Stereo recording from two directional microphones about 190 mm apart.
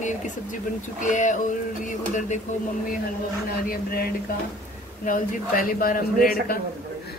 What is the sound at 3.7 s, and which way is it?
A man's voice, 50° left (ahead or behind).